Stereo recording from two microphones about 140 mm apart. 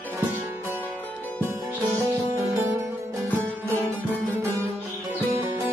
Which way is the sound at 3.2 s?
15° left (ahead or behind).